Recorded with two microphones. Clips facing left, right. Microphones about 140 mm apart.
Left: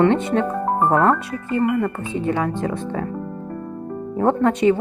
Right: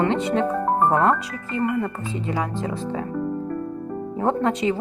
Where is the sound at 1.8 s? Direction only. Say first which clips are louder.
Left 4 dB; 25° right (ahead or behind).